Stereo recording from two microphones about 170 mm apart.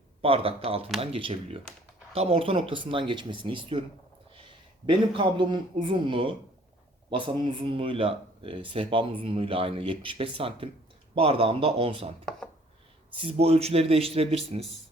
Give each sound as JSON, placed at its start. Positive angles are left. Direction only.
{"t": 0.2, "sound": "speech", "side_deg": -35}
{"t": 4.9, "sound": "speech", "side_deg": -30}
{"t": 13.1, "sound": "speech", "side_deg": -35}